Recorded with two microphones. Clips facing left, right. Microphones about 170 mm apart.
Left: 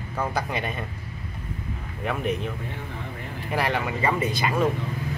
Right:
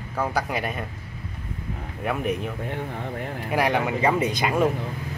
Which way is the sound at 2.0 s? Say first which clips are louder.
Right 1 dB; 10° right (ahead or behind).